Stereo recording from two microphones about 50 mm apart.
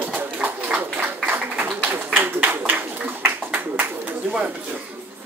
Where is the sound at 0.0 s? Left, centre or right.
Right.